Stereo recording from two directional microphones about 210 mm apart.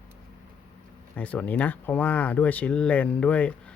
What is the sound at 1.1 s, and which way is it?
Speech, 5° left (ahead or behind).